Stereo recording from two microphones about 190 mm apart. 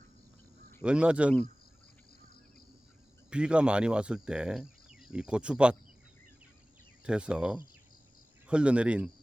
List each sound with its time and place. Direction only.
0.8 s speech: 5° right (ahead or behind)
3.2 s speech: 5° right (ahead or behind)
7.0 s speech: 5° right (ahead or behind)